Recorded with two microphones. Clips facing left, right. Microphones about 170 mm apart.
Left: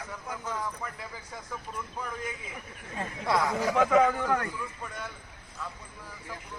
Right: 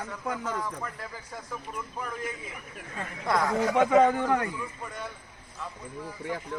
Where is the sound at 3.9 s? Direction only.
25° right (ahead or behind).